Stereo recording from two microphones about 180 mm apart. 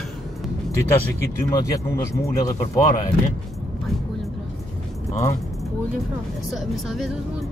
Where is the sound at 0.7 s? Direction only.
15° left (ahead or behind).